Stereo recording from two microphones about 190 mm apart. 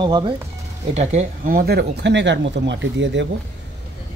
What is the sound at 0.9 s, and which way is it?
Speech, 40° right (ahead or behind).